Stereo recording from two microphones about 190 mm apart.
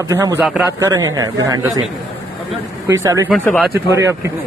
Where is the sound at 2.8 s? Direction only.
15° right (ahead or behind).